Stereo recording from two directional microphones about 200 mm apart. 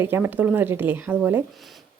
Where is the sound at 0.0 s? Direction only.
10° right (ahead or behind).